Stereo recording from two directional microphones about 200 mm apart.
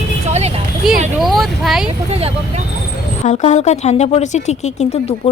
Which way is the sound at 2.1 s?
30° right (ahead or behind).